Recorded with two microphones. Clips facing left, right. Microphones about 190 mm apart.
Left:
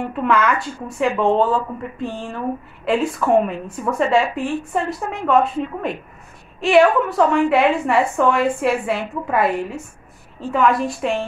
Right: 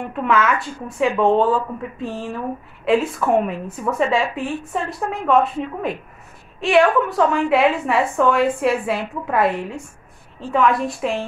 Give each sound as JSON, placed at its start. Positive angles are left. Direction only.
{"t": 0.0, "sound": "a woman's voice", "side_deg": 0}